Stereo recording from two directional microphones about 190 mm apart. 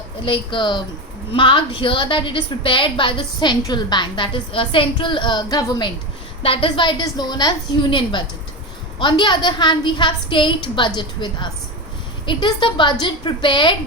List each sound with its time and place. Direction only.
0.3 s a woman's voice: 25° left (ahead or behind)